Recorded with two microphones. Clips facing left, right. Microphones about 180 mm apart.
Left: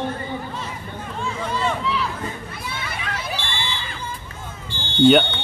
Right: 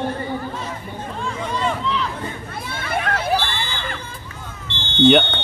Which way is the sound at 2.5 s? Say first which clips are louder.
Right 6 dB; 55° right (ahead or behind).